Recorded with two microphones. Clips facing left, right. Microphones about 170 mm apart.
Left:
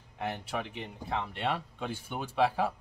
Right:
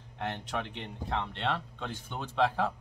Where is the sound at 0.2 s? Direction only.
5° left (ahead or behind).